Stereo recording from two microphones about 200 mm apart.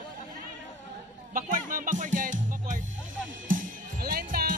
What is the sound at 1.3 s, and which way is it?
Music, 40° right (ahead or behind).